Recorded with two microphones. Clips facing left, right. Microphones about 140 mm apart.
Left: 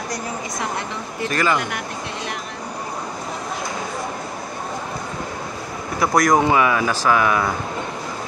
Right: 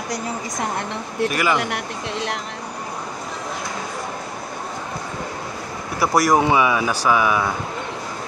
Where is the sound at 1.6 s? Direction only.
80° right.